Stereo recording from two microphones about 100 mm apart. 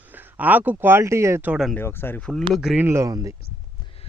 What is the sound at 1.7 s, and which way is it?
Speech, 25° left (ahead or behind).